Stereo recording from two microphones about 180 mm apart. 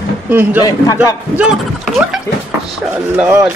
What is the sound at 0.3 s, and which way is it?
Speech, 10° right (ahead or behind).